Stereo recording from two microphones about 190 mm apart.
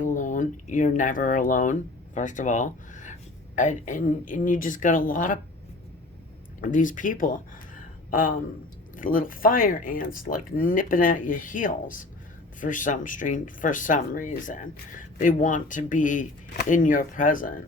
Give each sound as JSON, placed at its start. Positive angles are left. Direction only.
{"t": 0.0, "sound": "speech", "side_deg": 40}
{"t": 6.6, "sound": "speech", "side_deg": 45}
{"t": 9.0, "sound": "speech", "side_deg": 45}